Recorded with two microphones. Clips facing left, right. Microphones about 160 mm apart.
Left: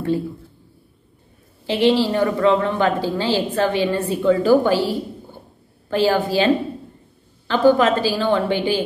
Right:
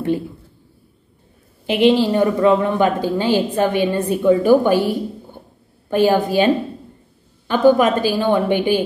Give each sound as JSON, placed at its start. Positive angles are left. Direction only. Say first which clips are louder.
{"t": 1.7, "sound": "a woman's voice", "louder": "right 3 dB", "side_deg": -15}